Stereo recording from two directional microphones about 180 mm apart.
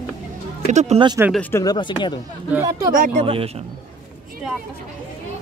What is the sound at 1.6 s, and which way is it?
Speech, 25° left (ahead or behind).